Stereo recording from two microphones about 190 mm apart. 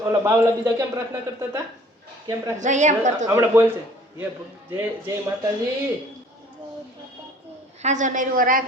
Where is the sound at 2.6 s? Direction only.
40° right (ahead or behind).